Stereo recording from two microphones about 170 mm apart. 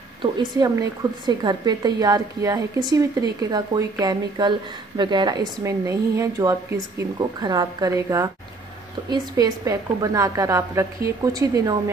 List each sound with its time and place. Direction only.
0.2 s a woman's voice: 25° right (ahead or behind)